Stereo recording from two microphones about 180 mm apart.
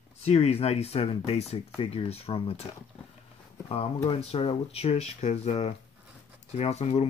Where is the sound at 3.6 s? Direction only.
30° left (ahead or behind).